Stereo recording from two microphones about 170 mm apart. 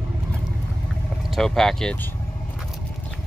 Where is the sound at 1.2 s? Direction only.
Centre (ahead or behind).